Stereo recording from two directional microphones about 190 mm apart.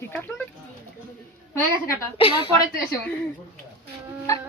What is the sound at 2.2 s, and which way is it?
Speech, 25° left (ahead or behind).